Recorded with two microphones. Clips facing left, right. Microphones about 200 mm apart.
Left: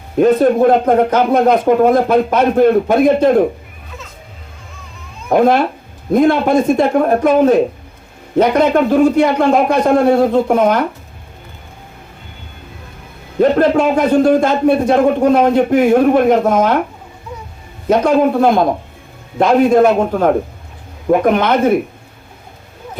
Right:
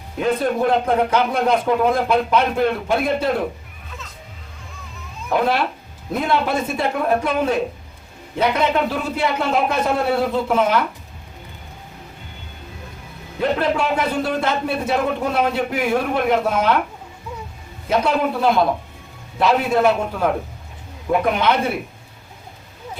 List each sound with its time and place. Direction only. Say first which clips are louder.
0.2 s a man's voice: left 9 dB; 50° left (ahead or behind)
5.3 s a man's voice: left 8 dB; 45° left (ahead or behind)
13.4 s a man's voice: left 9 dB; 45° left (ahead or behind)
18.0 s a man's voice: left 8 dB; 45° left (ahead or behind)